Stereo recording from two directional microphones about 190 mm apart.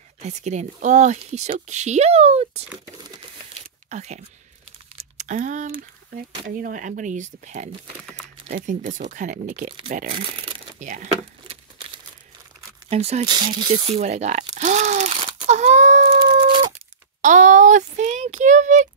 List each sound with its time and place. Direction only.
0.2 s speech: 35° right (ahead or behind)
3.9 s speech: 35° right (ahead or behind)
6.0 s speech: 50° right (ahead or behind)
10.1 s speech: 25° right (ahead or behind)
10.8 s speech: 40° right (ahead or behind)
12.9 s speech: 35° right (ahead or behind)
13.3 s speech: 25° right (ahead or behind); by 15.1 s 40° right (ahead or behind)
15.4 s a sound: 35° right (ahead or behind)
17.2 s a sound: 40° right (ahead or behind)